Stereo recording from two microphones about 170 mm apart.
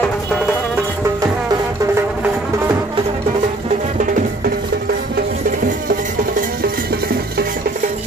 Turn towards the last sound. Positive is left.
turn(degrees=-65)  # may be behind; listen again after turning